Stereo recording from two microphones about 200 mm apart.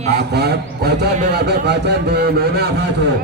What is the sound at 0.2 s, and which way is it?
A man's voice, 55° right (ahead or behind).